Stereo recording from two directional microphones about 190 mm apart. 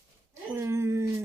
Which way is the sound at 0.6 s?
15° right (ahead or behind).